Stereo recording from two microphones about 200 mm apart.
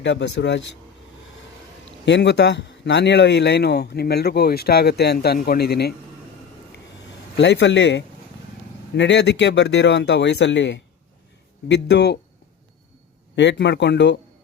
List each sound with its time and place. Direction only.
0.0 s a man's voice: 65° left (ahead or behind)
1.8 s a man's voice: 60° left (ahead or behind)
7.3 s a man's voice: 60° left (ahead or behind)
13.3 s a man's voice: 60° left (ahead or behind)